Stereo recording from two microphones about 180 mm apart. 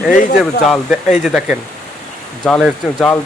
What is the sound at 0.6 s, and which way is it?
Speech, centre (ahead or behind).